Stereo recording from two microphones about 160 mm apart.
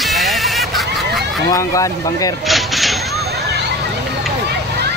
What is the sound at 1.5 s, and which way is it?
Speech, 20° left (ahead or behind).